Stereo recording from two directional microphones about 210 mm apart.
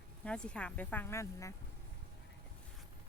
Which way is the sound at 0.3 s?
5° left (ahead or behind).